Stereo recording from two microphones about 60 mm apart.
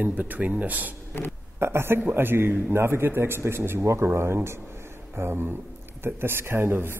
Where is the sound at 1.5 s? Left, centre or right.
Right.